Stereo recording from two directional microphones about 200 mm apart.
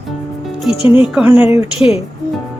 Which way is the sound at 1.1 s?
5° right (ahead or behind).